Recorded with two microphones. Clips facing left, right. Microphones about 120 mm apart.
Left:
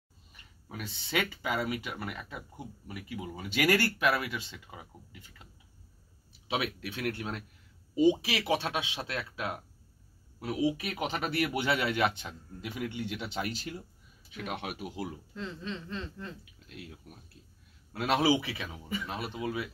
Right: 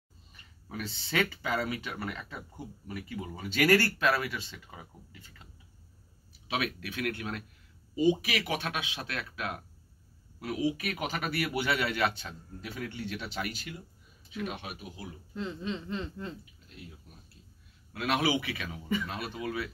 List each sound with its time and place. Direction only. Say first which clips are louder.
0.3 s speech: right 2 dB; 15° left (ahead or behind); by 13.7 s 30° left (ahead or behind)
14.3 s speech: even; 55° left (ahead or behind)
15.3 s speech: right 7 dB; 15° right (ahead or behind)
16.6 s speech: left 7 dB; 75° left (ahead or behind)
17.9 s speech: left 2 dB; 30° left (ahead or behind)